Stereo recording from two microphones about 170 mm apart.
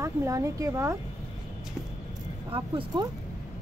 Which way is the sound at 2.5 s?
25° right (ahead or behind).